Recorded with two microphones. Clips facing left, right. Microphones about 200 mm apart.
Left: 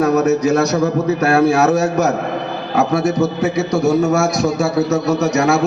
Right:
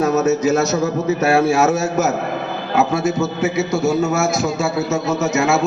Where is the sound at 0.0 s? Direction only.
25° right (ahead or behind).